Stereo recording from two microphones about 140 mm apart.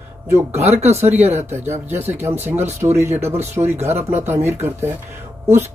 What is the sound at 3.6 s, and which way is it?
Speech, 50° right (ahead or behind).